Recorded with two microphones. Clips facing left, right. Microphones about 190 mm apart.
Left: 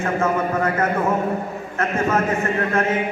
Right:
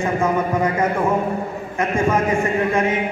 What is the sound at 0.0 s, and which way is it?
A man's voice, 15° right (ahead or behind).